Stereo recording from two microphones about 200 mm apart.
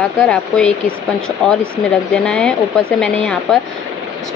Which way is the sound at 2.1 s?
5° left (ahead or behind).